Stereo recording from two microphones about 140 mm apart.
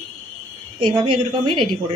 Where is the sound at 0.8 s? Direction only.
35° right (ahead or behind).